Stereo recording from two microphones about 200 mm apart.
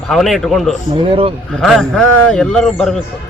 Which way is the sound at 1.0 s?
25° right (ahead or behind).